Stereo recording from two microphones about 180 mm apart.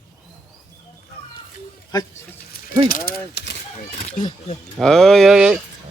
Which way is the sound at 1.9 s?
20° left (ahead or behind).